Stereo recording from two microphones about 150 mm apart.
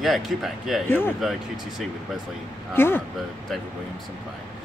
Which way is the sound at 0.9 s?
15° left (ahead or behind).